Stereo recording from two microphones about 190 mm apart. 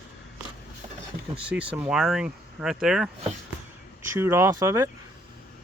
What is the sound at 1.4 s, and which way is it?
Speech, 5° right (ahead or behind).